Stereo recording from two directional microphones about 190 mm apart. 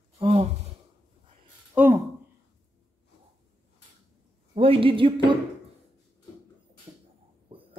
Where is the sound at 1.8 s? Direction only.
5° right (ahead or behind).